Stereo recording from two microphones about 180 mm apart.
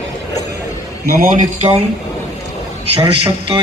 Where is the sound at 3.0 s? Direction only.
30° right (ahead or behind).